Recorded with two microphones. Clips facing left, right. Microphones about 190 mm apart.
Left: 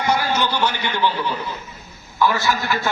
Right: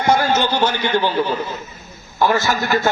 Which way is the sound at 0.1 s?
45° right (ahead or behind).